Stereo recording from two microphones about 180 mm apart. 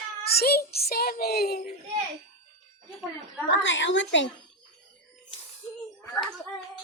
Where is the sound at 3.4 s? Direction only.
85° left.